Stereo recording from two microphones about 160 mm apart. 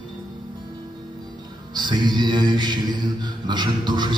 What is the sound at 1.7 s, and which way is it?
Mantra, 25° right (ahead or behind).